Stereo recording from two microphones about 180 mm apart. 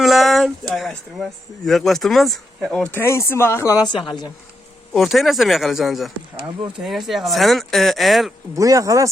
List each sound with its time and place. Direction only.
0.0 s speech: centre (ahead or behind); by 4.0 s 20° left (ahead or behind)
4.9 s speech: centre (ahead or behind)
8.5 s speech: 20° right (ahead or behind)